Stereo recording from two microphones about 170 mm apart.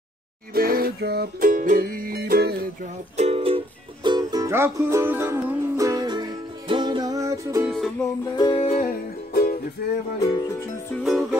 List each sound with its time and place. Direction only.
0.6 s music: 60° right (ahead or behind)
3.2 s music: 35° right (ahead or behind); by 7.6 s 20° right (ahead or behind)
8.4 s music: 30° left (ahead or behind)
9.3 s music: 60° left (ahead or behind)
10.1 s speech: 20° left (ahead or behind)
11.1 s music: centre (ahead or behind)